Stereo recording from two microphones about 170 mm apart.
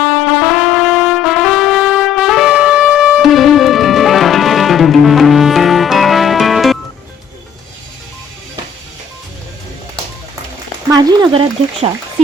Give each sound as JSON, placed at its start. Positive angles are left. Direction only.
{"t": 0.1, "sound": "brass instrument", "side_deg": 0}
{"t": 10.8, "sound": "frying", "side_deg": -20}
{"t": 11.3, "sound": "speech", "side_deg": -30}